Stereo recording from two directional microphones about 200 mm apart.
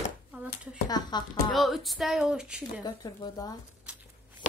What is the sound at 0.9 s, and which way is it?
Speech, 20° left (ahead or behind).